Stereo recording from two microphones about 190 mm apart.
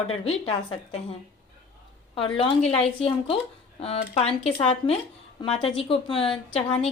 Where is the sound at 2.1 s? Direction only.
30° left (ahead or behind).